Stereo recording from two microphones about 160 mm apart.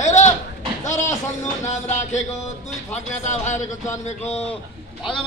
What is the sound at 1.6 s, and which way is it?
A man's voice, 45° left (ahead or behind).